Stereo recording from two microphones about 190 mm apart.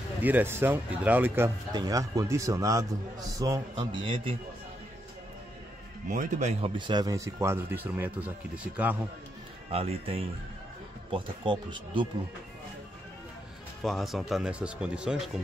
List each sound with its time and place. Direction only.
0.2 s a man's voice: 10° right (ahead or behind); by 4.4 s 25° right (ahead or behind)
6.0 s speech: 40° right (ahead or behind)
6.8 s speech: 20° right (ahead or behind)
9.7 s a man's voice: 30° right (ahead or behind)
13.8 s speech: centre (ahead or behind)